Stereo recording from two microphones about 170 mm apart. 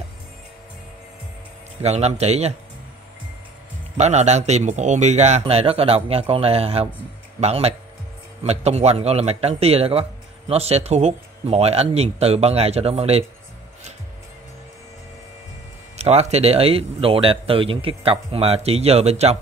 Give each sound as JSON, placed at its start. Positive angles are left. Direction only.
{"t": 1.8, "sound": "speech", "side_deg": -40}
{"t": 3.9, "sound": "speech", "side_deg": -40}
{"t": 16.0, "sound": "speech", "side_deg": -40}